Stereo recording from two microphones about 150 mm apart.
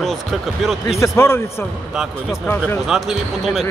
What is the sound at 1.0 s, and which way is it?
Speech, 20° left (ahead or behind).